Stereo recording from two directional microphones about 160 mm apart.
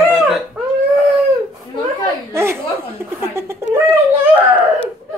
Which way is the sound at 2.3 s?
15° right (ahead or behind).